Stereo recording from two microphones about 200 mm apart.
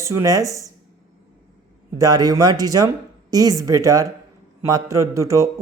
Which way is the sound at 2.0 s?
20° right (ahead or behind).